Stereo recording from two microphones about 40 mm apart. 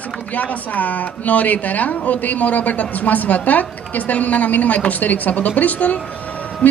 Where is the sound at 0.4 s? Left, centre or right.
Left.